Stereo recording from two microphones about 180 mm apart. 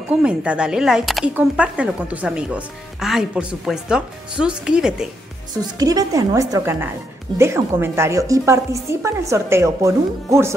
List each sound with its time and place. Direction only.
0.1 s speech: 5° right (ahead or behind)
5.8 s speech: 20° right (ahead or behind)